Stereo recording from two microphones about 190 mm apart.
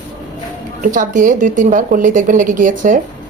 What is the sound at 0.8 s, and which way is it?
A woman's voice, 45° right (ahead or behind).